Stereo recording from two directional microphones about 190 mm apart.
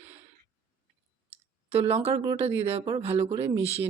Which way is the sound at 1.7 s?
30° right (ahead or behind).